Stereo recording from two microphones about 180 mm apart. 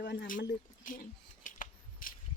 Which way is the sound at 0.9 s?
50° left (ahead or behind).